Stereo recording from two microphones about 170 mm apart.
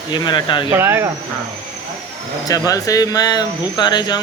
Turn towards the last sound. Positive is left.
turn(degrees=25)  # may be behind; listen again after turning